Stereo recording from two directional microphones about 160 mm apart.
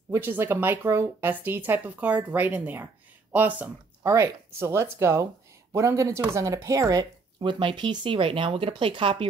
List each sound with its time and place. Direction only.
0.1 s speech: 15° right (ahead or behind); by 9.3 s 35° right (ahead or behind)